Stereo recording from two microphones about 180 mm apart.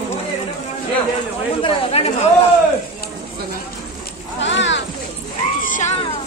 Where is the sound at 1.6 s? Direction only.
30° left (ahead or behind).